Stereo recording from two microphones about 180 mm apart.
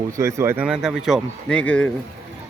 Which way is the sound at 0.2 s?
15° right (ahead or behind).